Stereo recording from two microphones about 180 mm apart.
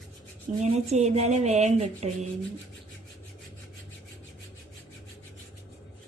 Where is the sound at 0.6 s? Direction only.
40° right (ahead or behind).